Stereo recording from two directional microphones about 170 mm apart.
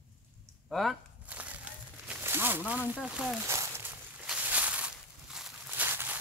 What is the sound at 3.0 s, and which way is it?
Speech, 5° right (ahead or behind).